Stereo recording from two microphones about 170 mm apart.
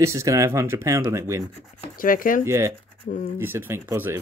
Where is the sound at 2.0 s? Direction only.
55° left (ahead or behind).